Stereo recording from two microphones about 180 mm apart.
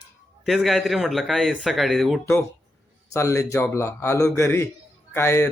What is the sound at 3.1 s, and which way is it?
Speech, 15° left (ahead or behind).